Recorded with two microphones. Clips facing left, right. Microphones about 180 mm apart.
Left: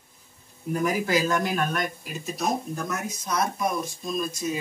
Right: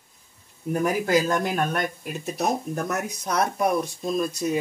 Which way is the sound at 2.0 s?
60° right (ahead or behind).